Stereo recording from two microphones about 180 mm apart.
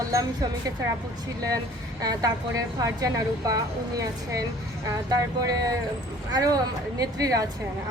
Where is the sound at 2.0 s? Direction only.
20° right (ahead or behind).